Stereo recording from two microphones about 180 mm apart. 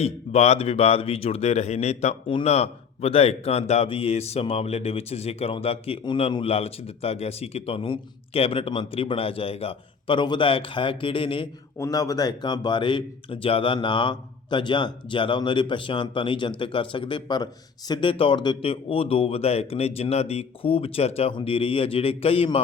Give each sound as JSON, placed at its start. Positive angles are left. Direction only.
{"t": 0.0, "sound": "speech", "side_deg": 35}